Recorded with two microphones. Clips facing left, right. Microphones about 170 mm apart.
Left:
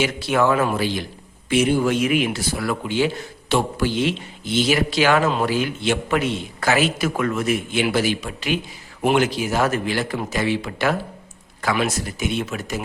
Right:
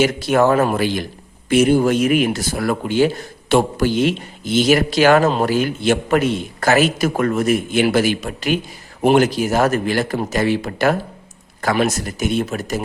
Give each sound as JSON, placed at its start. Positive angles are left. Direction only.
{"t": 0.0, "sound": "speech", "side_deg": -45}